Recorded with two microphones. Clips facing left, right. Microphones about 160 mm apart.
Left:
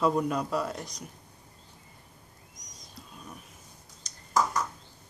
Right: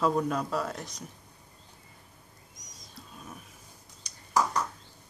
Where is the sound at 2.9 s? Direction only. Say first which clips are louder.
Even; 5° right (ahead or behind).